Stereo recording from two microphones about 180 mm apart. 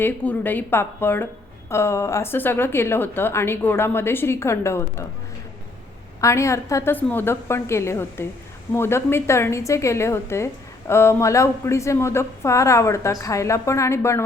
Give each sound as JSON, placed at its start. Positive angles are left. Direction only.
{"t": 0.0, "sound": "a woman's voice", "side_deg": 10}
{"t": 6.1, "sound": "a woman's voice", "side_deg": 15}